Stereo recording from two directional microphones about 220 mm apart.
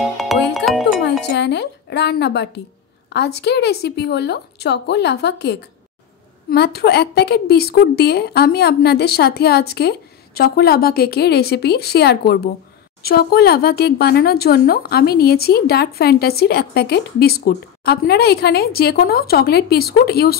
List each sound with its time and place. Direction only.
0.0 s music: centre (ahead or behind)
1.3 s speech: 50° left (ahead or behind)